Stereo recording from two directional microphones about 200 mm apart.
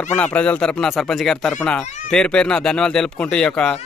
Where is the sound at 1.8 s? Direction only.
35° left (ahead or behind).